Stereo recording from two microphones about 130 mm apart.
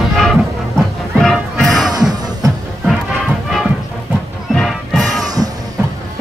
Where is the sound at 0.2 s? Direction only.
Centre (ahead or behind).